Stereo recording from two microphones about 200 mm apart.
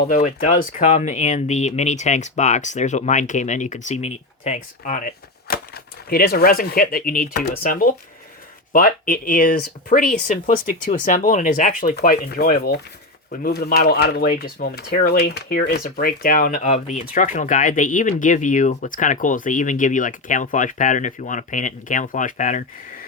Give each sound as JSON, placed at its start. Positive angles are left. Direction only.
{"t": 0.1, "sound": "speech", "side_deg": 40}